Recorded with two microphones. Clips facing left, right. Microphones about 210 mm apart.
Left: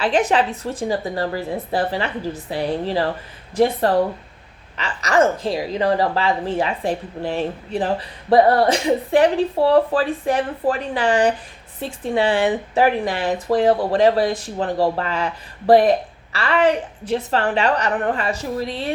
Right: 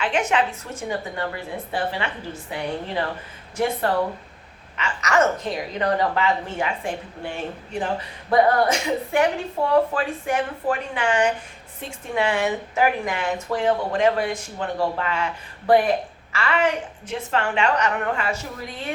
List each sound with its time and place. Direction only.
0.0 s speech: 35° left (ahead or behind)